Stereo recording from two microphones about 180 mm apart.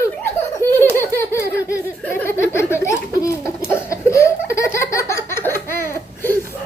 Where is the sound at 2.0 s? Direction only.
10° left (ahead or behind).